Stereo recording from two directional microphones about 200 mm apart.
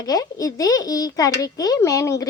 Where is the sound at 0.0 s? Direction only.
20° left (ahead or behind).